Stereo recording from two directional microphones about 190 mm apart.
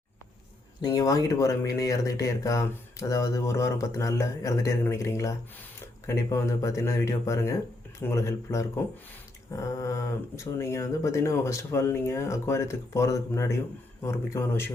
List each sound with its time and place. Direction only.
0.8 s speech: 20° left (ahead or behind)